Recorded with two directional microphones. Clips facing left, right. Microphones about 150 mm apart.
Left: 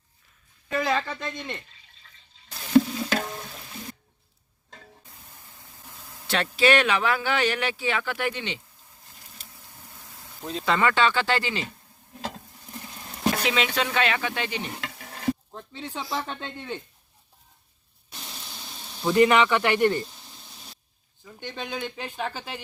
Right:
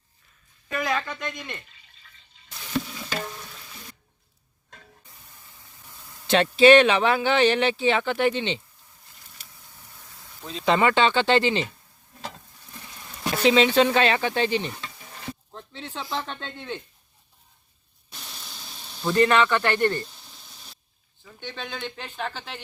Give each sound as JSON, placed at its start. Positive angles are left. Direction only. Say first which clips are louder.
{"t": 0.7, "sound": "speech", "louder": "left 2 dB", "side_deg": 30}
{"t": 6.2, "sound": "speech", "louder": "right 7 dB", "side_deg": -25}
{"t": 10.7, "sound": "speech", "louder": "right 3 dB", "side_deg": -20}
{"t": 13.3, "sound": "speech", "louder": "right 11 dB", "side_deg": -30}
{"t": 15.3, "sound": "speech", "louder": "left 11 dB", "side_deg": 10}
{"t": 19.0, "sound": "speech", "louder": "left 1 dB", "side_deg": 15}
{"t": 21.2, "sound": "speech", "louder": "left 1 dB", "side_deg": 10}